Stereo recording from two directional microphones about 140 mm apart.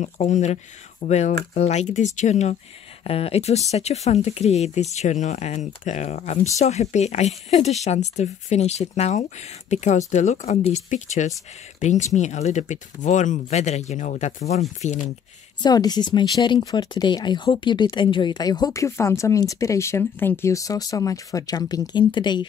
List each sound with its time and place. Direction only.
0.0 s speech: 55° left (ahead or behind)
3.0 s speech: 45° left (ahead or behind)
15.6 s speech: 30° left (ahead or behind)